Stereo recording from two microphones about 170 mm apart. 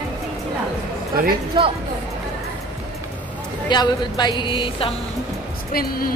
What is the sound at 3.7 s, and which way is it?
A woman's voice, 25° left (ahead or behind).